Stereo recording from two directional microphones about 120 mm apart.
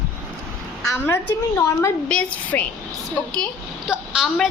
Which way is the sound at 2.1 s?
10° left (ahead or behind).